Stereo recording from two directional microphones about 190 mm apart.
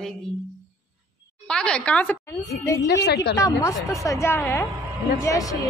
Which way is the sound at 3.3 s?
15° left (ahead or behind).